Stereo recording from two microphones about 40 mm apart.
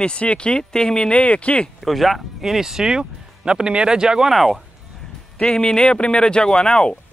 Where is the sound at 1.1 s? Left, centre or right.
Left.